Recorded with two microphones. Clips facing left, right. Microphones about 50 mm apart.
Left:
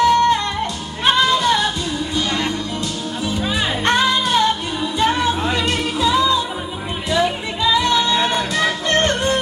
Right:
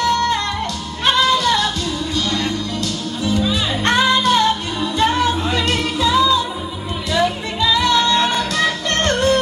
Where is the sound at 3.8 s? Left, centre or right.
Centre.